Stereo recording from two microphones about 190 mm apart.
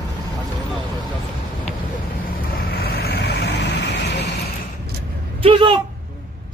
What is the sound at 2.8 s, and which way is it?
Vehicle, 55° left (ahead or behind).